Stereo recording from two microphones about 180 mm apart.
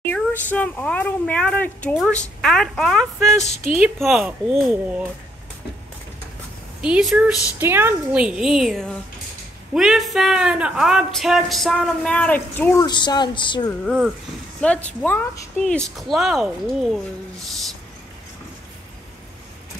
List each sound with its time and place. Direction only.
0.0 s speech: 10° left (ahead or behind); by 5.0 s 5° right (ahead or behind)
6.8 s speech: 5° right (ahead or behind); by 12.8 s 10° left (ahead or behind)
12.8 s speech: 25° left (ahead or behind)
14.6 s speech: 5° left (ahead or behind)